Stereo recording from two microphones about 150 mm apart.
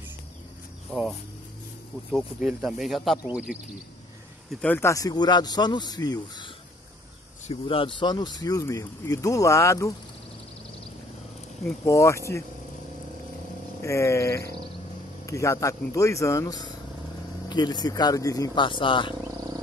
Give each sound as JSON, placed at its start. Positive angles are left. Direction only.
{"t": 0.9, "sound": "speech", "side_deg": 0}
{"t": 2.1, "sound": "speech", "side_deg": 0}
{"t": 4.5, "sound": "speech", "side_deg": 5}
{"t": 4.7, "sound": "speech", "side_deg": 20}
{"t": 7.6, "sound": "speech", "side_deg": 35}
{"t": 11.8, "sound": "speech", "side_deg": 20}
{"t": 13.8, "sound": "speech", "side_deg": 20}
{"t": 19.2, "sound": "insect", "side_deg": -25}